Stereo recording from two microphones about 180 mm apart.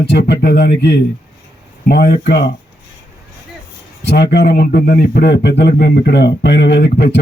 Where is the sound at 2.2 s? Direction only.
65° left (ahead or behind).